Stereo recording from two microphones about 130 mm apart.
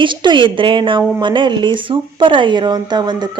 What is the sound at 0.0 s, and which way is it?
A woman's voice, 35° right (ahead or behind).